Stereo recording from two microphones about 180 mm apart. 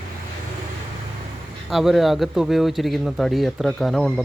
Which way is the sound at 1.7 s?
Centre (ahead or behind).